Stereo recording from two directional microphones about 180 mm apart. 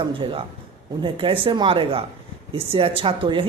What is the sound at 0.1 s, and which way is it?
Speech, 30° right (ahead or behind).